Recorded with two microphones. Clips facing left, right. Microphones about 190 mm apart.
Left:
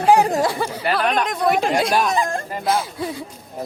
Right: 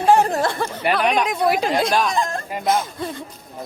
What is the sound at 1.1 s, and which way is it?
Speech, centre (ahead or behind).